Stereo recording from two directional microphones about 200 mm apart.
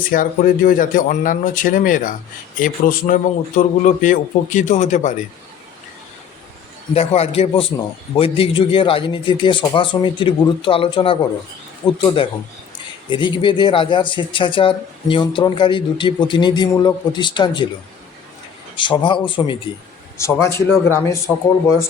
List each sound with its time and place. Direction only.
0.1 s a man's voice: 45° left (ahead or behind)
6.9 s speech: 30° left (ahead or behind)
13.1 s speech: 25° left (ahead or behind)
18.8 s speech: 25° left (ahead or behind)
20.1 s speech: 15° left (ahead or behind)